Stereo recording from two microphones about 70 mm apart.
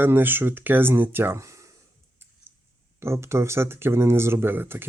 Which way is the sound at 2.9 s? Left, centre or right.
Right.